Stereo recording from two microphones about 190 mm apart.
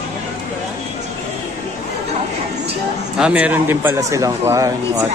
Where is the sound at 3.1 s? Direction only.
5° right (ahead or behind).